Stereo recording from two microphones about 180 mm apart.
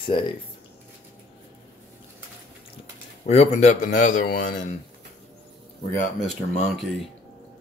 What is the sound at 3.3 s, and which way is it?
A man's voice, 40° left (ahead or behind).